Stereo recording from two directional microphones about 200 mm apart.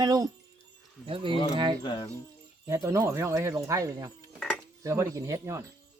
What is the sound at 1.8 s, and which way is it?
Speech, 25° left (ahead or behind).